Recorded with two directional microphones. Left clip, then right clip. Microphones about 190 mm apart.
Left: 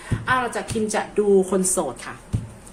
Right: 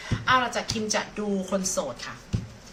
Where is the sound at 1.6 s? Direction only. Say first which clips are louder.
Left 5 dB; 40° left (ahead or behind).